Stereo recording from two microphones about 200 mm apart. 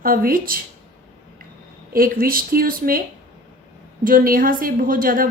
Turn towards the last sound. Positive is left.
turn(degrees=-45)  # may be behind; listen again after turning